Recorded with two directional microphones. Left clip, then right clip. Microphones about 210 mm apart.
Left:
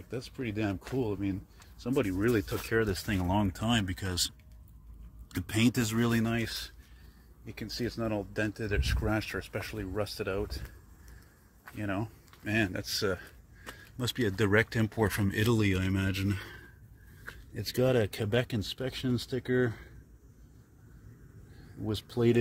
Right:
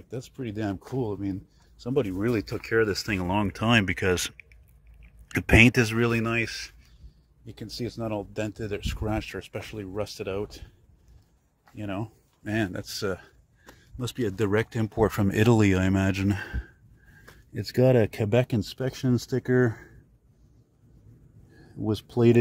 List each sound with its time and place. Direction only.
0.1 s speech: 15° right (ahead or behind)
5.5 s speech: 20° right (ahead or behind)
5.9 s speech: 5° right (ahead or behind)
7.4 s speech: 15° right (ahead or behind)
11.7 s speech: 10° right (ahead or behind)
13.7 s speech: 5° right (ahead or behind); by 16.4 s 35° right (ahead or behind)
17.7 s speech: 35° right (ahead or behind)
21.8 s speech: 50° right (ahead or behind)